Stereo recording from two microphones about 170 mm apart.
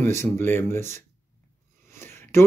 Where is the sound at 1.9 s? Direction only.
15° left (ahead or behind).